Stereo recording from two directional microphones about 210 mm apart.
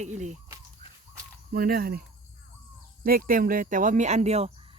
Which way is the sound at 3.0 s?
45° right (ahead or behind).